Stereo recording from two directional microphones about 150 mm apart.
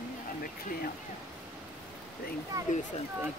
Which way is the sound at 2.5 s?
20° right (ahead or behind).